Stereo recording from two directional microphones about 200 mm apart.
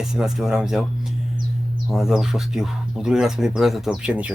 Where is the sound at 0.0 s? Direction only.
Centre (ahead or behind).